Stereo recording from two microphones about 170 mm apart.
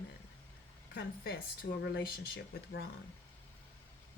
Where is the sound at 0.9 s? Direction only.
80° left.